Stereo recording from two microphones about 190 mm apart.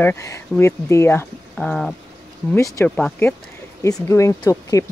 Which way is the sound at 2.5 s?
15° left (ahead or behind).